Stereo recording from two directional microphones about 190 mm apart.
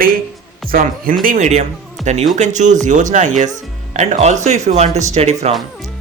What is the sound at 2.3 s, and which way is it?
Speech, 40° right (ahead or behind).